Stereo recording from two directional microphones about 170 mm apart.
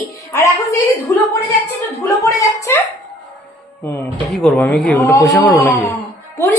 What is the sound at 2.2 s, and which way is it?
Speech, 20° left (ahead or behind).